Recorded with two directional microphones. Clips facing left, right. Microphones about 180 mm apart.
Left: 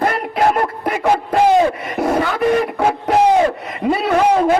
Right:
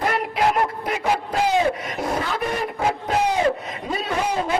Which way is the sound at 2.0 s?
70° left (ahead or behind).